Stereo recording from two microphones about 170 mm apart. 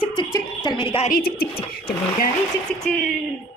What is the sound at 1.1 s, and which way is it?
Speech, 65° left (ahead or behind).